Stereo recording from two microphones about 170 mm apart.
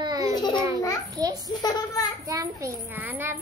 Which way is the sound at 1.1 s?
25° right (ahead or behind).